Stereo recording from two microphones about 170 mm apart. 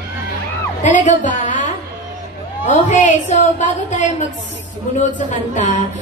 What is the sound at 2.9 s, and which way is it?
A woman's voice, 45° left (ahead or behind).